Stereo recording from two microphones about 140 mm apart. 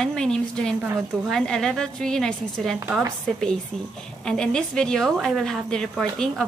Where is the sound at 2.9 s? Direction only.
10° right (ahead or behind).